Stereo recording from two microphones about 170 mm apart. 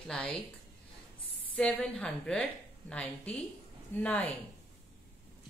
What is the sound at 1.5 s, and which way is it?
A woman's voice, 5° left (ahead or behind).